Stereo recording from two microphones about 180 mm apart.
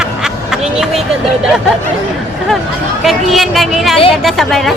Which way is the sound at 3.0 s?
Centre (ahead or behind).